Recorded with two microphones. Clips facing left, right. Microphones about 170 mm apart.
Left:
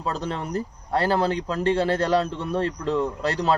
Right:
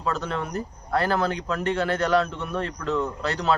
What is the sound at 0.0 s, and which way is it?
Speech, 35° left (ahead or behind).